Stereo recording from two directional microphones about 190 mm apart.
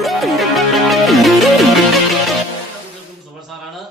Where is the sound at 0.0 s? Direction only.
Centre (ahead or behind).